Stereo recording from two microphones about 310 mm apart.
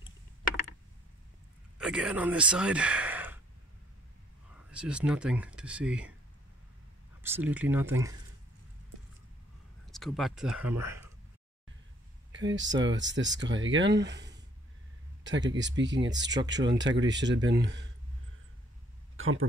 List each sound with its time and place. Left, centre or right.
1.8 s speech: centre
4.6 s speech: centre
7.2 s speech: centre
9.8 s speech: centre
12.3 s speech: right
19.1 s a sound: right